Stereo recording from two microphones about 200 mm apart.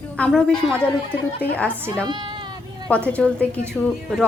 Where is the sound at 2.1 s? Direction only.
25° right (ahead or behind).